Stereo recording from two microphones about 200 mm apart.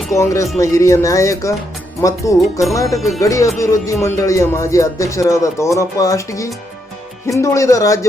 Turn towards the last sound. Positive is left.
turn(degrees=15)  # may be behind; listen again after turning